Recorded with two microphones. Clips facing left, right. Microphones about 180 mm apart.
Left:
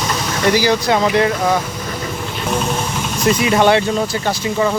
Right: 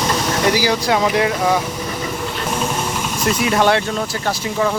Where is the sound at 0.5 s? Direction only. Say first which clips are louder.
Left 2 dB; 5° right (ahead or behind).